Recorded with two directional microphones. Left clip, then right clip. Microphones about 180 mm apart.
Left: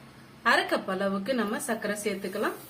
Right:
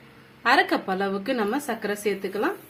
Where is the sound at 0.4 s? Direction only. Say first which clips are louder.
Right 4 dB; 55° right (ahead or behind).